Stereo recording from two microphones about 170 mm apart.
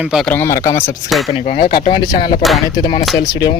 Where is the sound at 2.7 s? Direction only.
25° left (ahead or behind).